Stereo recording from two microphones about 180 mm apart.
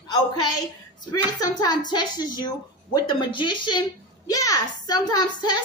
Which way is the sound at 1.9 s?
25° left (ahead or behind).